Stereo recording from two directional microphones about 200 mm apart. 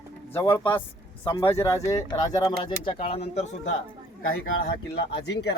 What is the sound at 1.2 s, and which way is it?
Speech, 25° left (ahead or behind).